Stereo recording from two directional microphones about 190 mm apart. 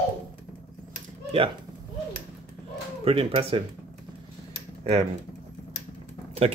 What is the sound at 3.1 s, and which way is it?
Speech, 30° right (ahead or behind).